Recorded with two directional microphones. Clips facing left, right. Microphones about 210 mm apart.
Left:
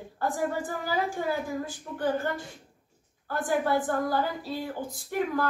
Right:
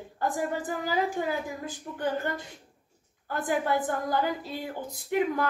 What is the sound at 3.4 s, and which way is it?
Speech, 20° right (ahead or behind).